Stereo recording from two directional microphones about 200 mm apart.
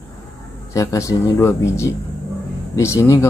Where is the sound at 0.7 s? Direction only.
15° left (ahead or behind).